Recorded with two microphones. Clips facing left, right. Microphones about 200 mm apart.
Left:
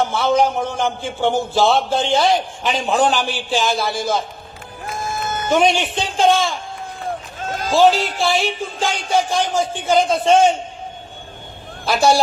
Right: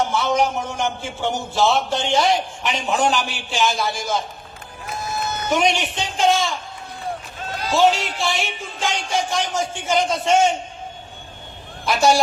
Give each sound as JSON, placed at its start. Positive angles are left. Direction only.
{"t": 0.1, "sound": "a man's voice", "side_deg": 30}
{"t": 4.9, "sound": "run", "side_deg": 50}
{"t": 5.6, "sound": "a man's voice", "side_deg": 30}
{"t": 7.0, "sound": "a man's voice", "side_deg": 45}
{"t": 11.9, "sound": "a man's voice", "side_deg": 30}